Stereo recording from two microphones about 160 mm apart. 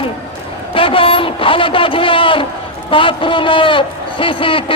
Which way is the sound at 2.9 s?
30° left (ahead or behind).